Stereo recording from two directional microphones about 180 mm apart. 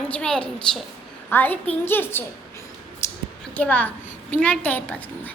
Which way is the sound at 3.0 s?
15° left (ahead or behind).